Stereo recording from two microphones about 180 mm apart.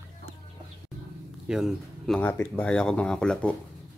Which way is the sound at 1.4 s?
5° right (ahead or behind).